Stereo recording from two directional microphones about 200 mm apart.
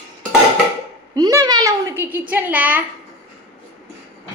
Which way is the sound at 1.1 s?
20° right (ahead or behind).